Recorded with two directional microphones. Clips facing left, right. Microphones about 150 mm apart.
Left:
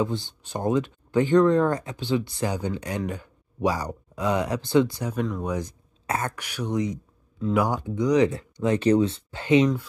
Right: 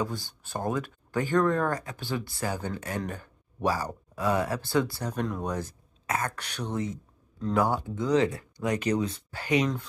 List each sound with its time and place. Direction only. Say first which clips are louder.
0.0 s speech: left 5 dB; 20° left (ahead or behind)
5.2 s speech: left 3 dB; centre (ahead or behind)
5.5 s speech: left 4 dB; 15° left (ahead or behind)
6.0 s speech: left 2 dB; 30° left (ahead or behind)
6.3 s speech: left 5 dB; 10° left (ahead or behind)